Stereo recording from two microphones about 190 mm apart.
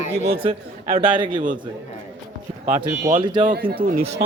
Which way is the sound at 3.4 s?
40° right (ahead or behind).